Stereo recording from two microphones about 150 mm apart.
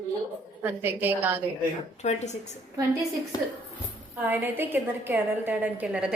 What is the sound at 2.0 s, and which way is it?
Speech, 50° left (ahead or behind).